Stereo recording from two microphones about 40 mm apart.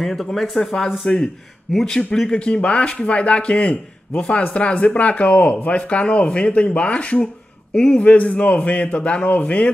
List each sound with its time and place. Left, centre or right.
0.0 s speech: centre
1.0 s speech: centre
7.7 s a man's voice: left
8.0 s speech: left